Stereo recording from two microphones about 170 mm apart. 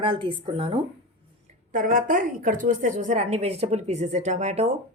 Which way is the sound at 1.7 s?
50° right (ahead or behind).